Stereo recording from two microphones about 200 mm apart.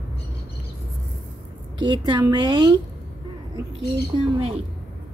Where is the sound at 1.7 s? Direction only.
25° right (ahead or behind).